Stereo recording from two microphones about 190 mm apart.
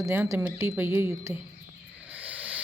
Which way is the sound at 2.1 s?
10° right (ahead or behind).